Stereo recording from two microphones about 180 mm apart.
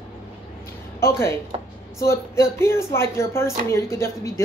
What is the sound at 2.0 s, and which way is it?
Speech, 15° left (ahead or behind).